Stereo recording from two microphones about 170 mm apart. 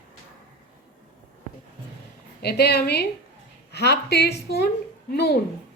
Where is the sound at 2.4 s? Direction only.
70° left (ahead or behind).